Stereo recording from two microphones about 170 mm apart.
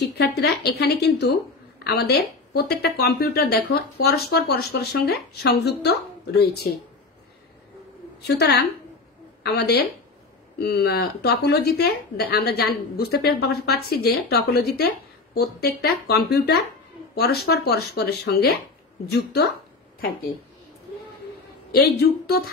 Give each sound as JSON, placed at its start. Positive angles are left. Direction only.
{"t": 0.0, "sound": "speech", "side_deg": 80}
{"t": 8.2, "sound": "a woman's voice", "side_deg": 75}
{"t": 21.7, "sound": "speech", "side_deg": 65}